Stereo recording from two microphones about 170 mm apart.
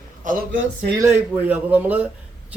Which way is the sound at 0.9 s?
15° right (ahead or behind).